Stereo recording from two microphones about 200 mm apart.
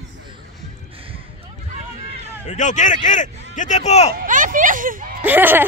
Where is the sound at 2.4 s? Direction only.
40° left (ahead or behind).